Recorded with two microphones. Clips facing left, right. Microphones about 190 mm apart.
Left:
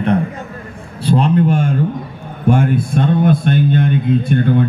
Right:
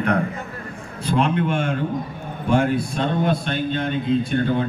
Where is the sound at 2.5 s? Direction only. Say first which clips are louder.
Left 4 dB; 50° left (ahead or behind).